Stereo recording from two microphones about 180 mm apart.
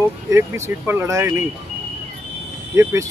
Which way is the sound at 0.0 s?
15° right (ahead or behind).